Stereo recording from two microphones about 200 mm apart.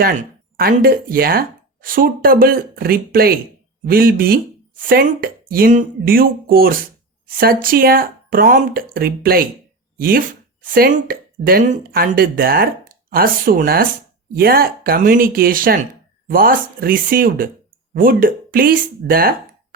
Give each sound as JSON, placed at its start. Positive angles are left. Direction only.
{"t": 0.0, "sound": "speech", "side_deg": -45}